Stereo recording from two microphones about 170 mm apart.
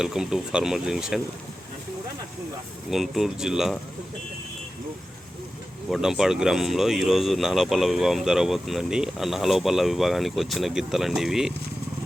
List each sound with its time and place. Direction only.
0.0 s speech: 5° right (ahead or behind)
2.9 s speech: centre (ahead or behind)
5.9 s speech: centre (ahead or behind)